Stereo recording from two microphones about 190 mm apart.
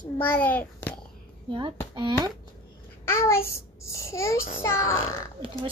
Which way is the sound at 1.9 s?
25° right (ahead or behind).